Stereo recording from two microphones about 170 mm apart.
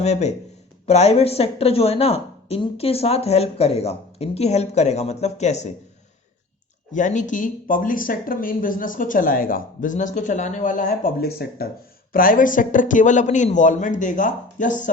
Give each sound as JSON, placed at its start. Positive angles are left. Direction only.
{"t": 0.0, "sound": "speech", "side_deg": 40}
{"t": 6.9, "sound": "speech", "side_deg": 45}
{"t": 12.1, "sound": "speech", "side_deg": 55}